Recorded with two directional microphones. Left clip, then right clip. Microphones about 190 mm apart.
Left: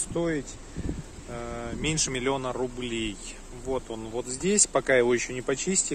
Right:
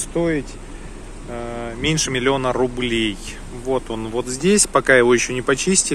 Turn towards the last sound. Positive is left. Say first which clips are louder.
# right 10 dB
turn(degrees=5)  # may be behind; listen again after turning